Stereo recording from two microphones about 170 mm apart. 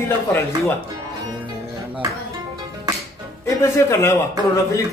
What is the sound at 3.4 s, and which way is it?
Speech, 15° left (ahead or behind).